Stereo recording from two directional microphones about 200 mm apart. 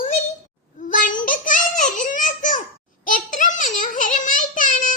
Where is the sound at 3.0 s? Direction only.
40° left (ahead or behind).